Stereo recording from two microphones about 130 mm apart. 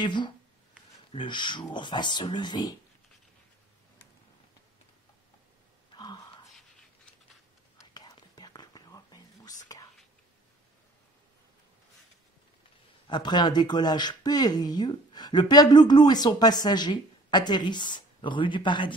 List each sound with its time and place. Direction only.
0.0 s speech: 35° left (ahead or behind)
5.9 s gasp: 35° left (ahead or behind)
7.7 s whispering: 30° left (ahead or behind)
13.0 s speech: 35° left (ahead or behind)